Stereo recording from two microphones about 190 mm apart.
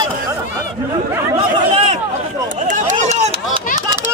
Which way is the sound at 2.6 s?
40° right (ahead or behind).